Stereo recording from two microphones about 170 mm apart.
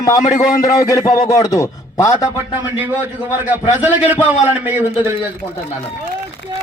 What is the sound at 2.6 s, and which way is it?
A man's voice, 10° right (ahead or behind).